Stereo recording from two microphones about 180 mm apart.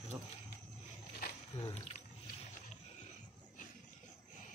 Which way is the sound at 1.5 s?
40° left (ahead or behind).